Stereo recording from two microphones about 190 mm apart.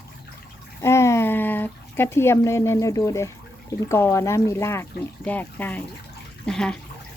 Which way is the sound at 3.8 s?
15° left (ahead or behind).